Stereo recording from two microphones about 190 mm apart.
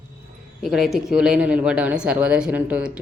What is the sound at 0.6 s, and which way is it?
Speech, centre (ahead or behind).